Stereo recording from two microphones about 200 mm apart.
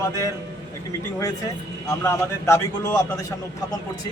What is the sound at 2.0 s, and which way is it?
Speech, 15° left (ahead or behind).